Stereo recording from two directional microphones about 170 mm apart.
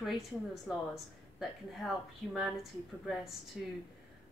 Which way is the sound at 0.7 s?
Centre (ahead or behind).